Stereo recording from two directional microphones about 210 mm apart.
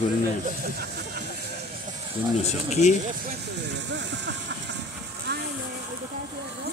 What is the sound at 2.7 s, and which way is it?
Speech, 35° left (ahead or behind).